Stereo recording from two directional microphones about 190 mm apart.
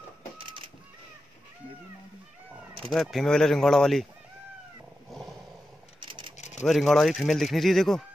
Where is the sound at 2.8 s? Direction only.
Centre (ahead or behind).